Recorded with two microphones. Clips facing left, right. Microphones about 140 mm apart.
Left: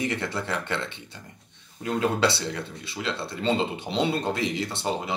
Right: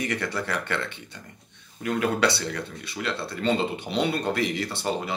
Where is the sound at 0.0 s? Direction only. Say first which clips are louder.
Even; 25° left (ahead or behind).